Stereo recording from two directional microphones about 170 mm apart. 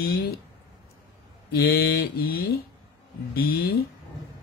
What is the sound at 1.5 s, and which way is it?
Speech, 65° left (ahead or behind).